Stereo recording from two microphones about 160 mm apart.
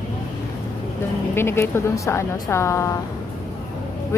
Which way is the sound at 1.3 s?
15° left (ahead or behind).